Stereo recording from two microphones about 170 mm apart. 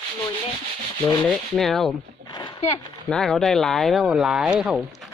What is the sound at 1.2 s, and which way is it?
Speech, centre (ahead or behind).